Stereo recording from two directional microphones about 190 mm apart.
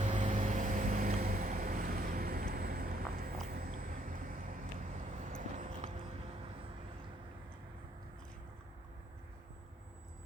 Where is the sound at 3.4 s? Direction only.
50° right (ahead or behind).